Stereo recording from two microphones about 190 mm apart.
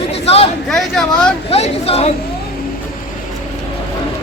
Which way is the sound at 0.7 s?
5° left (ahead or behind).